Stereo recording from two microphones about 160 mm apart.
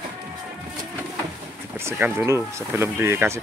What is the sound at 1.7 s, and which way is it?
Vehicle, 15° right (ahead or behind).